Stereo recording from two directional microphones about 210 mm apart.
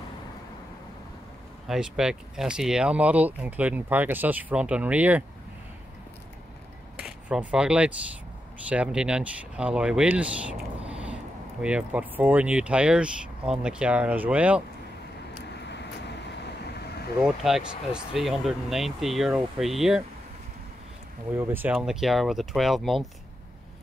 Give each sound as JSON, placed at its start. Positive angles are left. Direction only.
{"t": 1.7, "sound": "speech", "side_deg": -5}
{"t": 7.0, "sound": "speech", "side_deg": -5}
{"t": 15.5, "sound": "vehicle", "side_deg": 55}
{"t": 17.2, "sound": "speech", "side_deg": 0}
{"t": 21.4, "sound": "speech", "side_deg": -10}